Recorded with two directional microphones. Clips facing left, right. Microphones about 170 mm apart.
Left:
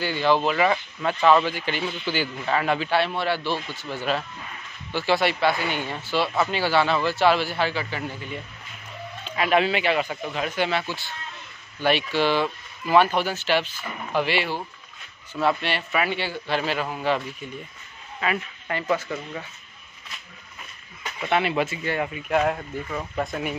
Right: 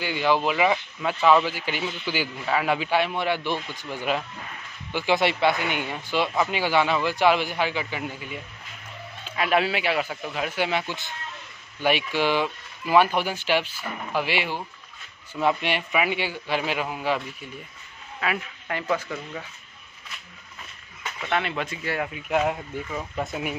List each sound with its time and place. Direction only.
0.0 s speech: 10° right (ahead or behind)
18.2 s speech: 5° right (ahead or behind)
19.0 s speech: 5° left (ahead or behind)
21.3 s speech: 5° left (ahead or behind)